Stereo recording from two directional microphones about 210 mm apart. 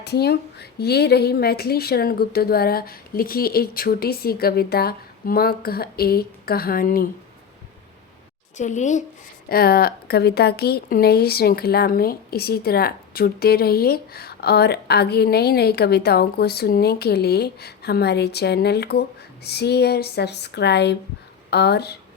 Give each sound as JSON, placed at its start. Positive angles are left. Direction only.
{"t": 0.0, "sound": "speech", "side_deg": 50}
{"t": 8.5, "sound": "speech", "side_deg": 35}
{"t": 9.5, "sound": "speech", "side_deg": 45}